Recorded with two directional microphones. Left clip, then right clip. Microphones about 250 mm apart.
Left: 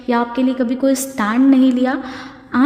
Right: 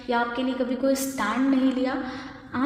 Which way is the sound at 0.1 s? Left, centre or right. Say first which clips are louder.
Left 7 dB; left.